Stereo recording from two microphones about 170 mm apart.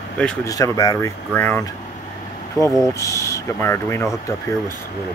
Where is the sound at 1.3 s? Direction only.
10° left (ahead or behind).